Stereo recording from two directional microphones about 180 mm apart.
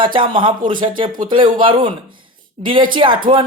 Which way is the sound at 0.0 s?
25° right (ahead or behind).